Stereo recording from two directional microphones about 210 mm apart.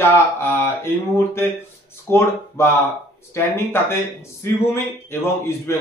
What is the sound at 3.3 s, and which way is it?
A man's voice, 10° left (ahead or behind).